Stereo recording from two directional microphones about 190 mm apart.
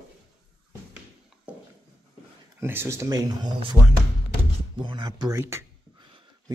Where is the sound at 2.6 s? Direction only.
10° right (ahead or behind).